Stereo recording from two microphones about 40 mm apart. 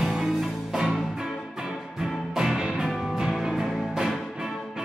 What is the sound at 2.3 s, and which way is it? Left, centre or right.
Music, centre.